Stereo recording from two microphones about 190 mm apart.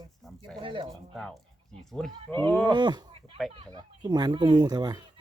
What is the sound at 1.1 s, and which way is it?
Speech, centre (ahead or behind).